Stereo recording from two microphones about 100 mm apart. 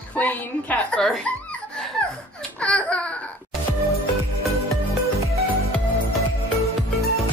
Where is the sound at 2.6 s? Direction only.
10° left (ahead or behind).